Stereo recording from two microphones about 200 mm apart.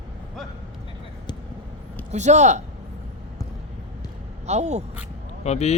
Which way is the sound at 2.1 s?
35° right (ahead or behind).